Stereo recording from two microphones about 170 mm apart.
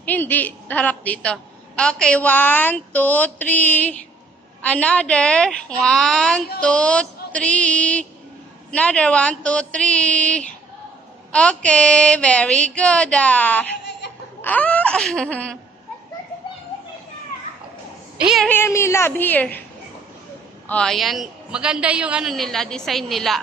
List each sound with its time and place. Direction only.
0.0 s a woman's voice: 10° left (ahead or behind)
18.1 s speech: centre (ahead or behind)
18.5 s a woman's voice: 15° left (ahead or behind)
20.6 s a woman's voice: 5° left (ahead or behind)